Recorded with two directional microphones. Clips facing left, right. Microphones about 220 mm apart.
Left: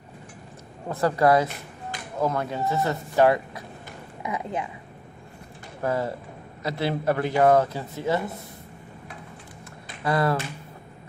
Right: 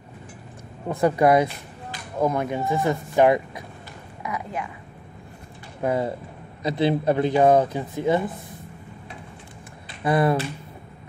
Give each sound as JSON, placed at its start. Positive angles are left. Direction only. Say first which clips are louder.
{"t": 0.8, "sound": "speech", "louder": "right 2 dB", "side_deg": -20}
{"t": 4.2, "sound": "a woman's voice", "louder": "left 1 dB", "side_deg": 20}
{"t": 5.8, "sound": "speech", "louder": "right 2 dB", "side_deg": -20}
{"t": 10.0, "sound": "speech", "louder": "right 3 dB", "side_deg": -20}